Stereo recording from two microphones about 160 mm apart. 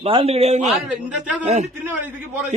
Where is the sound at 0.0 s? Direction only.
35° right (ahead or behind).